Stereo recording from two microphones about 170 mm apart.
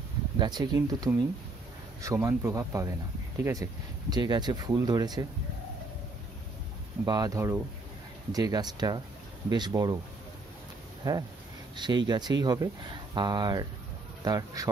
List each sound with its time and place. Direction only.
0.4 s speech: 25° right (ahead or behind)
7.1 s speech: 20° right (ahead or behind)
11.0 s speech: 20° right (ahead or behind)